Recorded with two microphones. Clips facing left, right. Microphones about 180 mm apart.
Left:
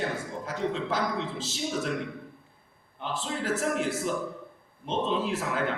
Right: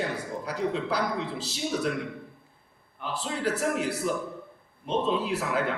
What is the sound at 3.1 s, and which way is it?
A man's voice, 40° right (ahead or behind).